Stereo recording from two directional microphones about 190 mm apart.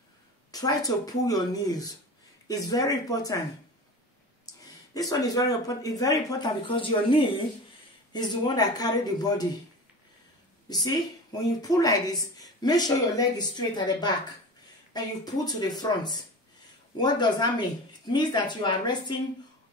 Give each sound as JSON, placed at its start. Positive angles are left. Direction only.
{"t": 0.5, "sound": "speech", "side_deg": 20}
{"t": 5.2, "sound": "speech", "side_deg": 20}
{"t": 10.7, "sound": "speech", "side_deg": 20}
{"t": 15.2, "sound": "speech", "side_deg": 20}